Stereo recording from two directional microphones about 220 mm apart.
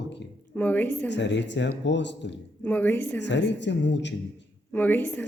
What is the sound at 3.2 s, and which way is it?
Speech, 55° left (ahead or behind).